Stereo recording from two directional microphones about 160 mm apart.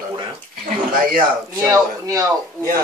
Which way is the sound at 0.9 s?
60° right (ahead or behind).